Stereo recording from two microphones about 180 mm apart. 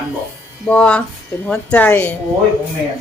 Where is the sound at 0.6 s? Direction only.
5° left (ahead or behind).